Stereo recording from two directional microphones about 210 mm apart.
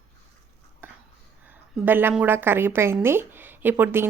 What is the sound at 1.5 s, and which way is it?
A woman's voice, 10° right (ahead or behind).